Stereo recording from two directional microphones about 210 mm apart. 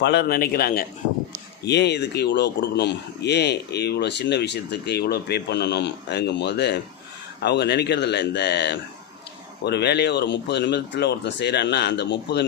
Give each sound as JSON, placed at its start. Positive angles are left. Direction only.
{"t": 0.0, "sound": "speech", "side_deg": 55}